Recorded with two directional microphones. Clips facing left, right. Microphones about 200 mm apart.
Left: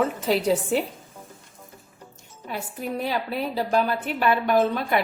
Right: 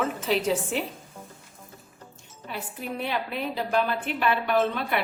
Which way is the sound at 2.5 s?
40° left (ahead or behind).